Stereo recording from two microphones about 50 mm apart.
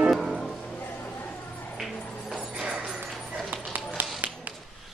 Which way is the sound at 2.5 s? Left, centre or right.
Centre.